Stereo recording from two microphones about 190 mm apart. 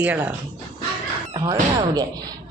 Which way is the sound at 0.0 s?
10° right (ahead or behind).